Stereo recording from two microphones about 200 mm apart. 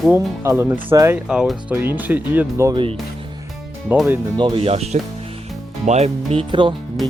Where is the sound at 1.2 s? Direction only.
Centre (ahead or behind).